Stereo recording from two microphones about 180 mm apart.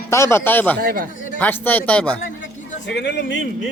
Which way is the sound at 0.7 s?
55° right (ahead or behind).